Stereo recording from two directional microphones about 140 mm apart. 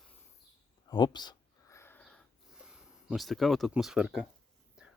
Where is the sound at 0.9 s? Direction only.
30° left (ahead or behind).